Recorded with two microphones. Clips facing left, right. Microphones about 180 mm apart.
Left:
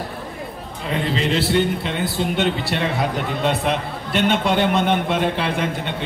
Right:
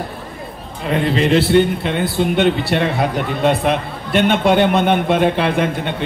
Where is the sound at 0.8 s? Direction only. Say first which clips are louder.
Right 6 dB; 60° right (ahead or behind).